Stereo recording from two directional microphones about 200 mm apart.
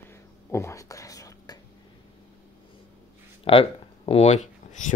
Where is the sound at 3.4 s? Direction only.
30° left (ahead or behind).